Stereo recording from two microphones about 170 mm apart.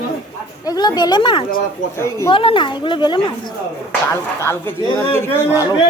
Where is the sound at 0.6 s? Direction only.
25° left (ahead or behind).